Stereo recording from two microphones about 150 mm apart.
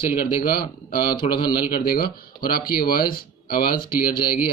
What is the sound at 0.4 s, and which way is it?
Speech, 90° left.